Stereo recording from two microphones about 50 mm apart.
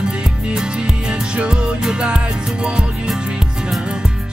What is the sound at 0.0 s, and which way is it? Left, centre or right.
Music, centre.